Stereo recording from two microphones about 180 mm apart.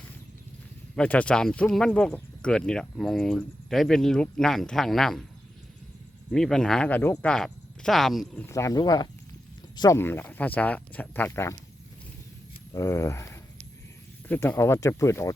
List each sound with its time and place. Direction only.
0.9 s speech: 10° left (ahead or behind)
6.3 s speech: 5° left (ahead or behind)
8.4 s speech: 15° left (ahead or behind)
10.0 s speech: 10° left (ahead or behind)
12.7 s speech: 15° left (ahead or behind)